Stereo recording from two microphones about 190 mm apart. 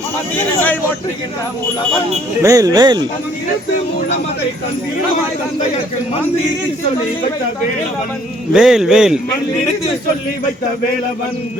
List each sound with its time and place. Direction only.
2.4 s speech: 15° right (ahead or behind)
8.5 s a man's voice: 5° right (ahead or behind)